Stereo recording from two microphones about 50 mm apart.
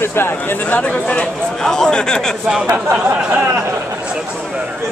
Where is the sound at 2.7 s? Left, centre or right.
Right.